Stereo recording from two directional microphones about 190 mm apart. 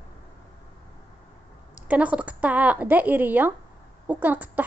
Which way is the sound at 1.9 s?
5° right (ahead or behind).